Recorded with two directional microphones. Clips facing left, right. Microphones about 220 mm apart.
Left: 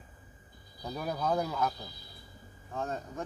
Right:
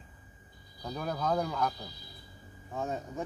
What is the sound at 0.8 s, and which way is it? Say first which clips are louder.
A man's voice: even; 5° left (ahead or behind).